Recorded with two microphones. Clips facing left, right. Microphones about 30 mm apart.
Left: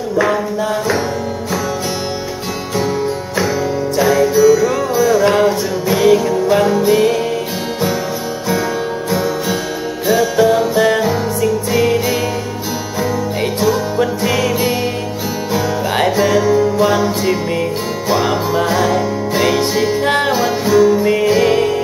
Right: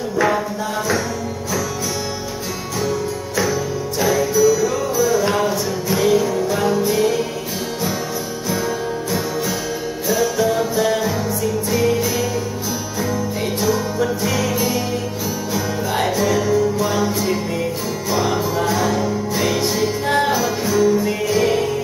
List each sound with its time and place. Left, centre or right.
4.0 s music: left
10.3 s music: left
13.9 s music: left